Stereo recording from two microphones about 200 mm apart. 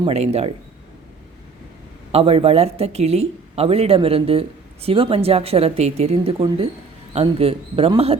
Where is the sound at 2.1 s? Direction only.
30° right (ahead or behind).